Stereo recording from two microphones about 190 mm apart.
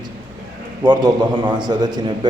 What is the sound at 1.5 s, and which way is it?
Speech, 20° right (ahead or behind).